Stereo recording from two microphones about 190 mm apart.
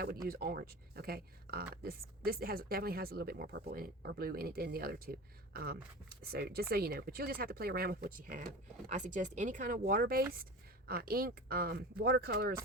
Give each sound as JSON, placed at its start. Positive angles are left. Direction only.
{"t": 0.3, "sound": "speech", "side_deg": -55}